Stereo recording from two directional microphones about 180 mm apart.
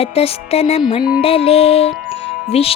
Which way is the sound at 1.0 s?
5° right (ahead or behind).